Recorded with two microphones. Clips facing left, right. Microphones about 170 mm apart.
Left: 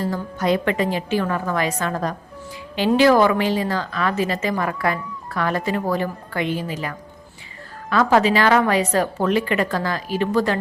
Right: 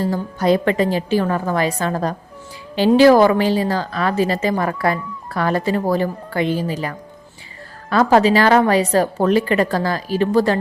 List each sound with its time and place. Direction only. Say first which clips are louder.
0.0 s a woman's voice: right 4 dB; 35° right (ahead or behind)